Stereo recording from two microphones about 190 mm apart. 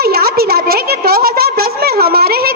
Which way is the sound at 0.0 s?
55° right (ahead or behind).